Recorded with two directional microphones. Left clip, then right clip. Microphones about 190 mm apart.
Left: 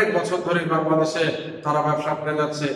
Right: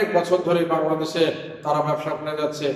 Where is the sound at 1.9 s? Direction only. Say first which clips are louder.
Left 3 dB; 20° right (ahead or behind).